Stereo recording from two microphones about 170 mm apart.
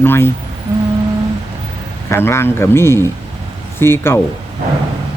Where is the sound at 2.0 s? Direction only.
15° left (ahead or behind).